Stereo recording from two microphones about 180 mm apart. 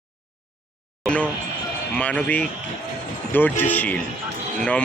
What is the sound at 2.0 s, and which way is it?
Speech, 5° left (ahead or behind).